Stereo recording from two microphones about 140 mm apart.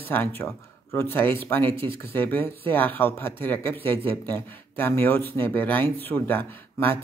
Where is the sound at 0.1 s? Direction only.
15° left (ahead or behind).